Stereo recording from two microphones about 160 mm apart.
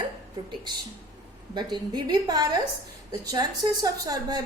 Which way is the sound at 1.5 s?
25° right (ahead or behind).